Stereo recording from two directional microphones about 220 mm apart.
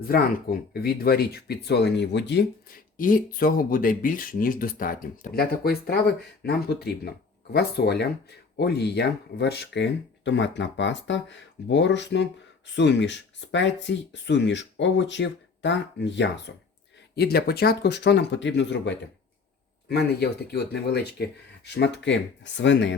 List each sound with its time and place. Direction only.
0.1 s speech: 40° left (ahead or behind)